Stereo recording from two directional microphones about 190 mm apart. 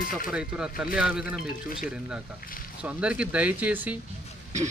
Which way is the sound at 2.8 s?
5° right (ahead or behind).